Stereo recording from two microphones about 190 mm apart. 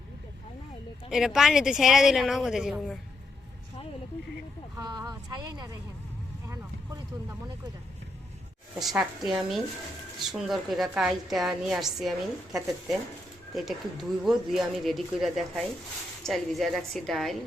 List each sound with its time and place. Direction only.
1.1 s a woman's voice: centre (ahead or behind)
4.8 s speech: 20° right (ahead or behind)
6.5 s vehicle: 15° right (ahead or behind)
8.8 s a woman's voice: centre (ahead or behind)